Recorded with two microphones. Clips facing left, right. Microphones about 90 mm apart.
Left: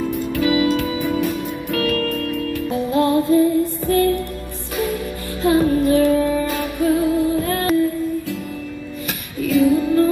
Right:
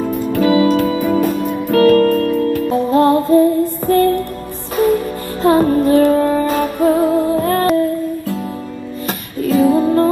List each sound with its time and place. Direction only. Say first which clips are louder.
0.0 s music: right 5 dB; 40° right (ahead or behind)
9.0 s music: right 5 dB; 40° right (ahead or behind)